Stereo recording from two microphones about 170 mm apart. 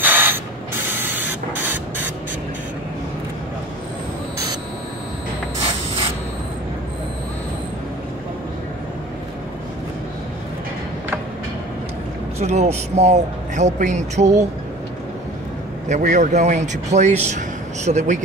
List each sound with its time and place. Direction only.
0.0 s ratchet: 10° right (ahead or behind)
0.8 s spray: 10° right (ahead or behind)
5.7 s spray: 35° right (ahead or behind)
12.4 s speech: 40° right (ahead or behind)
15.9 s speech: 45° right (ahead or behind)